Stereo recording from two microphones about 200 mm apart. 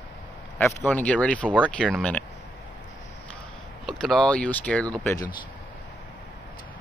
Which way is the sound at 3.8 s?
Centre (ahead or behind).